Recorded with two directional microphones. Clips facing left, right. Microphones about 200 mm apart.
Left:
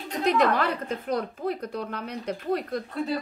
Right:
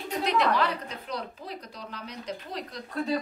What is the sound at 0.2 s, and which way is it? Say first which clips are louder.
A woman's voice: left 3 dB; 50° left (ahead or behind).